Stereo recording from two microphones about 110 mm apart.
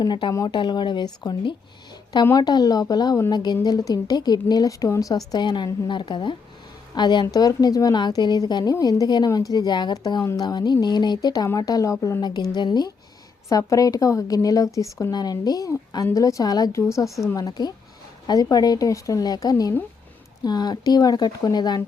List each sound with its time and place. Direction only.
0.0 s a woman's voice: 40° left (ahead or behind)
13.5 s a woman's voice: 30° left (ahead or behind)